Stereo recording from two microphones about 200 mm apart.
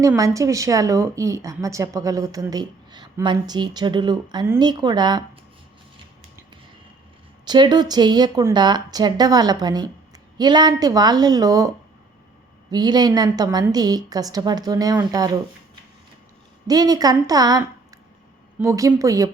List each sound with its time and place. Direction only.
0.0 s speech: 15° right (ahead or behind)
7.4 s a woman's voice: 20° right (ahead or behind)
12.7 s a woman's voice: 20° right (ahead or behind)
16.6 s a woman's voice: 20° right (ahead or behind)
18.6 s speech: 15° right (ahead or behind)